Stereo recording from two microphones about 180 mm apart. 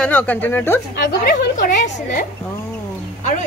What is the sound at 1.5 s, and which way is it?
Speech, 45° left (ahead or behind).